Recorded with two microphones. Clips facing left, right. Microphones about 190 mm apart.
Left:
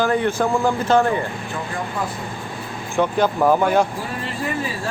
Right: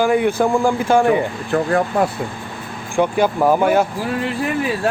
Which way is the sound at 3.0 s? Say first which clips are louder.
Right 2 dB; 10° right (ahead or behind).